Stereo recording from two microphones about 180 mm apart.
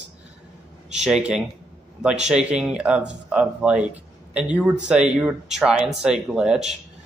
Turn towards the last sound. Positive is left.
turn(degrees=-5)  # may be behind; listen again after turning